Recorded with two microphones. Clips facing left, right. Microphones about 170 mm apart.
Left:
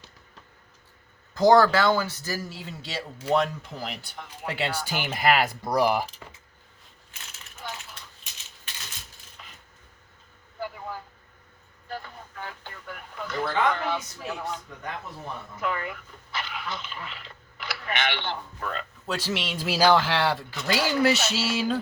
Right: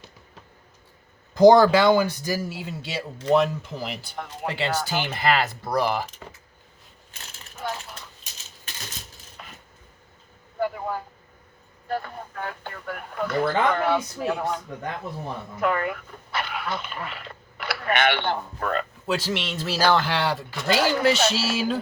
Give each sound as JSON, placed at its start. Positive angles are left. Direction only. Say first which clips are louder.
{"t": 1.3, "sound": "speech", "louder": "right 4 dB", "side_deg": -15}
{"t": 4.1, "sound": "speech", "louder": "right 4 dB", "side_deg": -60}
{"t": 5.0, "sound": "speech", "louder": "left 3 dB", "side_deg": 10}
{"t": 7.6, "sound": "a sound", "louder": "right 7 dB", "side_deg": -60}
{"t": 7.9, "sound": "typewriter", "louder": "right 4 dB", "side_deg": -40}
{"t": 9.4, "sound": "a sound", "louder": "right 6 dB", "side_deg": -55}
{"t": 10.6, "sound": "vehicle", "louder": "right 8 dB", "side_deg": -60}
{"t": 11.9, "sound": "speech", "louder": "right 8 dB", "side_deg": -55}
{"t": 15.6, "sound": "speech", "louder": "right 6 dB", "side_deg": -55}
{"t": 19.0, "sound": "speech", "louder": "right 1 dB", "side_deg": 0}
{"t": 20.1, "sound": "speech", "louder": "even", "side_deg": 0}
{"t": 20.7, "sound": "speech", "louder": "right 2 dB", "side_deg": -55}